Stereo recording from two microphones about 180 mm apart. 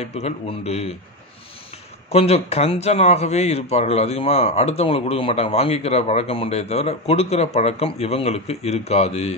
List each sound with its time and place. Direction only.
0.0 s speech: 35° left (ahead or behind)
2.0 s speech: 35° left (ahead or behind)